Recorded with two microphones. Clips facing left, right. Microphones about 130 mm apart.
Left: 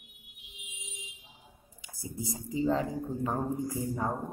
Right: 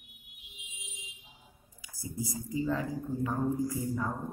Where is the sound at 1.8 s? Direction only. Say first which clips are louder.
Right 1 dB; 25° left (ahead or behind).